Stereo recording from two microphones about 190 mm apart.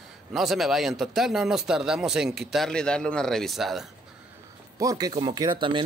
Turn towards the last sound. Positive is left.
turn(degrees=-25)  # may be behind; listen again after turning